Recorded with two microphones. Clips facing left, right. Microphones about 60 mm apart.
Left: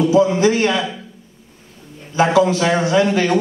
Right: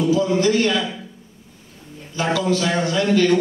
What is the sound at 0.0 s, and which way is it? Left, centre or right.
Speech, left.